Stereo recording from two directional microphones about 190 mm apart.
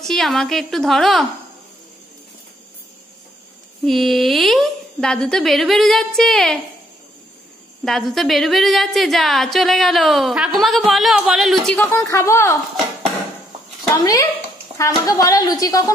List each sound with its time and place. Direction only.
0.0 s a woman's voice: centre (ahead or behind)
3.8 s a woman's voice: centre (ahead or behind)
7.8 s a woman's voice: centre (ahead or behind)
14.8 s a woman's voice: 20° left (ahead or behind)